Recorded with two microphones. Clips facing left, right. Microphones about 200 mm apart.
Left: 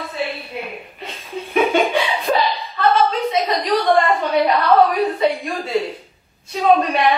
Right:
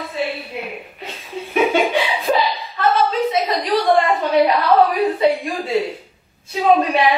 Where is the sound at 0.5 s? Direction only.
5° right (ahead or behind).